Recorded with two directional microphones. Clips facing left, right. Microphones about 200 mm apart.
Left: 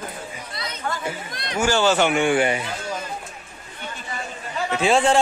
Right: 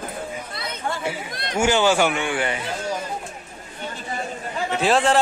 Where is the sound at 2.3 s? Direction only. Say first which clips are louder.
Left 5 dB; 15° left (ahead or behind).